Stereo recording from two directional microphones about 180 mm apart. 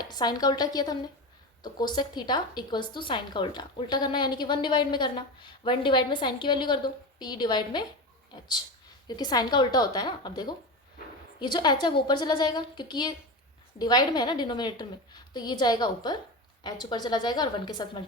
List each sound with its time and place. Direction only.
0.0 s a woman's voice: 25° left (ahead or behind)
9.0 s a woman's voice: 25° left (ahead or behind)